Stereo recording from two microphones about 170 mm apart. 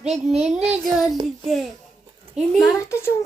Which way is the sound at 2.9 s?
15° left (ahead or behind).